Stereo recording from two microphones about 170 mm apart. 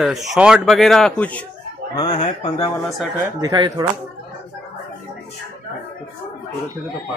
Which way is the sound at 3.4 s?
25° right (ahead or behind).